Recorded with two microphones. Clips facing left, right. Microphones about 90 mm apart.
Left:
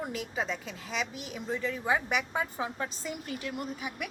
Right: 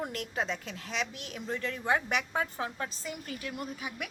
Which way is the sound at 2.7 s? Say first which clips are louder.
Left 2 dB; 15° left (ahead or behind).